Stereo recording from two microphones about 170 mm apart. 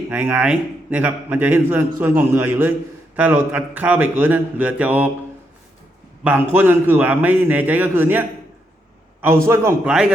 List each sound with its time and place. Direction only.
0.1 s a man's voice: 10° right (ahead or behind)
6.2 s a man's voice: 10° right (ahead or behind)
9.2 s a man's voice: 15° right (ahead or behind)
9.8 s a man's voice: 5° right (ahead or behind)